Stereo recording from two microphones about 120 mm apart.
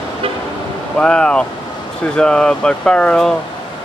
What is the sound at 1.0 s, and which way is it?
Speech, 5° left (ahead or behind).